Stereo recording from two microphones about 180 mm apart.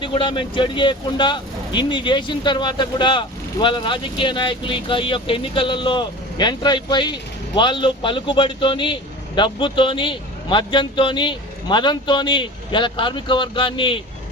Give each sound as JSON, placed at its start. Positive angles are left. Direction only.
{"t": 0.0, "sound": "speech", "side_deg": 25}